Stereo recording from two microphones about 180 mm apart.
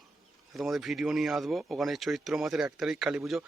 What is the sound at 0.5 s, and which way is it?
Speech, centre (ahead or behind).